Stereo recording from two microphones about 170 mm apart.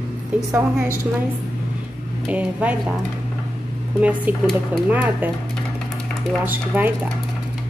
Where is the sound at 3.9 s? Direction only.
10° right (ahead or behind).